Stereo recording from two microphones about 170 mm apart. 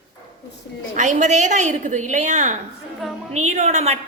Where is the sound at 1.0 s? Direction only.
45° right (ahead or behind).